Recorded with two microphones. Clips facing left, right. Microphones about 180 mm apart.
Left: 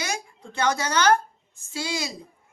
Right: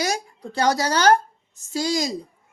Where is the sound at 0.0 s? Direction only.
40° right (ahead or behind).